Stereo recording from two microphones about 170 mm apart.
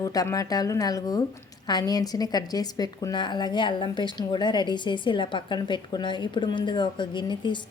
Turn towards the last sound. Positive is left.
turn(degrees=25)  # may be behind; listen again after turning